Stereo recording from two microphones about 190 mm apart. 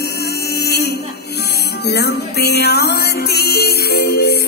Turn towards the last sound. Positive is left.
turn(degrees=55)  # may be behind; listen again after turning